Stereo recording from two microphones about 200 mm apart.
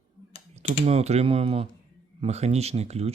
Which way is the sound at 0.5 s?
30° right (ahead or behind).